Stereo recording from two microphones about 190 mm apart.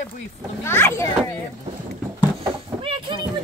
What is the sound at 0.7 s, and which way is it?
Speech, 15° left (ahead or behind).